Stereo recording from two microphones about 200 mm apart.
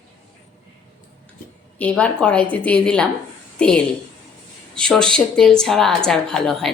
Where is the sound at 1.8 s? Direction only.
5° left (ahead or behind).